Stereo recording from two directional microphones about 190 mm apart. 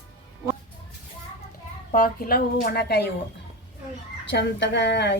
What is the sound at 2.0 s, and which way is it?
Speech, 50° left (ahead or behind).